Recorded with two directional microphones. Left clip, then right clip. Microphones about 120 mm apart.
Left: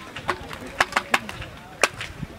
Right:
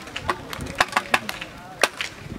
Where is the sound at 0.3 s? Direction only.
10° right (ahead or behind).